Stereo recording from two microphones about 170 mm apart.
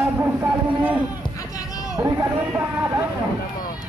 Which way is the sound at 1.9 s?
20° right (ahead or behind).